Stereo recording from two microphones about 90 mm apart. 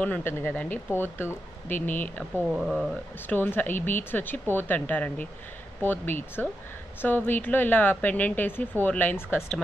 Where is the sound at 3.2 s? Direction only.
20° left (ahead or behind).